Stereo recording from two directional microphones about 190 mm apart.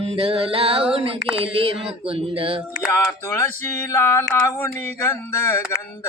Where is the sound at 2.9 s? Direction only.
15° left (ahead or behind).